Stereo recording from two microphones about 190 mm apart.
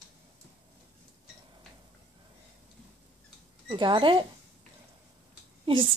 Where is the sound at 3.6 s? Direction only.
25° right (ahead or behind).